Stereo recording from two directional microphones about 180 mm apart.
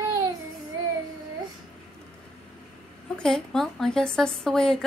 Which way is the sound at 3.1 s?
5° left (ahead or behind).